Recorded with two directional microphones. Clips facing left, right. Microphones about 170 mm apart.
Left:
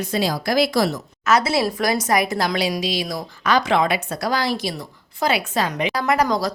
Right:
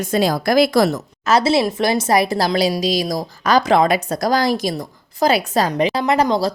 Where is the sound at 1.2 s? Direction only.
30° right (ahead or behind).